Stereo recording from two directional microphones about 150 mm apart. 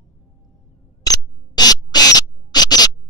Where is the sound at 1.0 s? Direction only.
25° left (ahead or behind).